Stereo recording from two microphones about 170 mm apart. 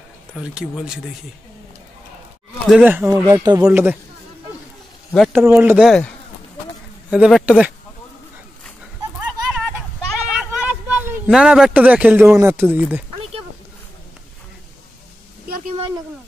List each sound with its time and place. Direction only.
0.4 s speech: 5° right (ahead or behind)
2.7 s speech: 5° right (ahead or behind)
3.1 s speech: 20° right (ahead or behind)
3.6 s speech: 10° right (ahead or behind)
5.3 s speech: 10° right (ahead or behind)
7.1 s speech: 5° right (ahead or behind)
9.5 s a sound: 5° right (ahead or behind)